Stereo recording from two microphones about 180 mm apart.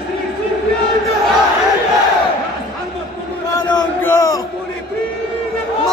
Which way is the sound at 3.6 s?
20° left (ahead or behind).